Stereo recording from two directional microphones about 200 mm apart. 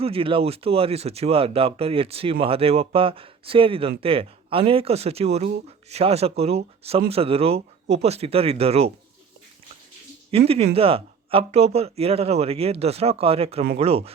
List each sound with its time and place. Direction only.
0.0 s speech: 30° right (ahead or behind)
10.3 s speech: 30° right (ahead or behind)